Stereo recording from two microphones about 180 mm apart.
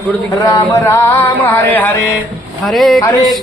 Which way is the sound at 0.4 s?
15° left (ahead or behind).